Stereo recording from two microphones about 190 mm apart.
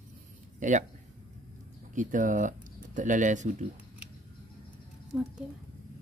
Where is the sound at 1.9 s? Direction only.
45° right (ahead or behind).